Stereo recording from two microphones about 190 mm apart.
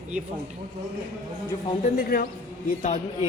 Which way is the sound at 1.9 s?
50° left (ahead or behind).